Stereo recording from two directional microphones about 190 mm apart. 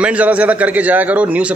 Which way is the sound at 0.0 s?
5° right (ahead or behind).